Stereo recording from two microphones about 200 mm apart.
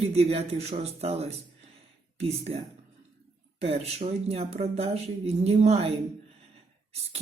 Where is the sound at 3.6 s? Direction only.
30° right (ahead or behind).